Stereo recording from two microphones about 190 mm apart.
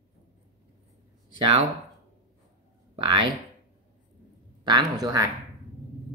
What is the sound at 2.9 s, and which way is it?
Speech, 25° right (ahead or behind).